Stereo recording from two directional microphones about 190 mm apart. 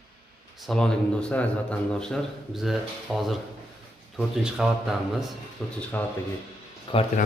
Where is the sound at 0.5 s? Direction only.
Centre (ahead or behind).